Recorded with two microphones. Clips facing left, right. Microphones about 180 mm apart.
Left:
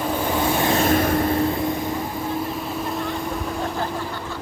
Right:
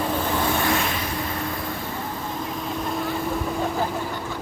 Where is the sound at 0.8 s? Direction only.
50° left (ahead or behind).